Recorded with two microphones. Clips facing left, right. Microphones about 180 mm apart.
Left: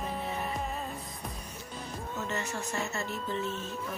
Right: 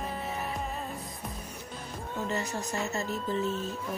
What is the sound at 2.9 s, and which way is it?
Music, 40° right (ahead or behind).